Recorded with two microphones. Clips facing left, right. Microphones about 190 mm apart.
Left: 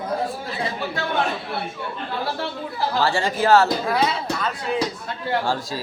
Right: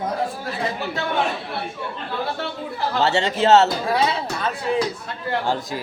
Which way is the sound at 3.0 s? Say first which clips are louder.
Right 2 dB; 25° right (ahead or behind).